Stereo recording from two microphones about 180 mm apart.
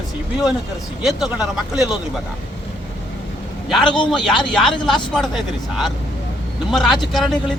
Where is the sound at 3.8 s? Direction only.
25° left (ahead or behind).